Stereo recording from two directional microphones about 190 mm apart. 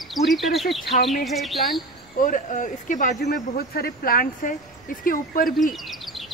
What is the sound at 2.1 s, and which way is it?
Speech, 45° left (ahead or behind).